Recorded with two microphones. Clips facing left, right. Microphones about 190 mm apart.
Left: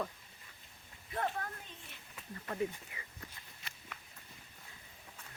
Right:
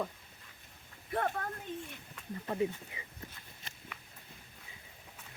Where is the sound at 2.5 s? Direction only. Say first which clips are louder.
Right 4 dB; 25° right (ahead or behind).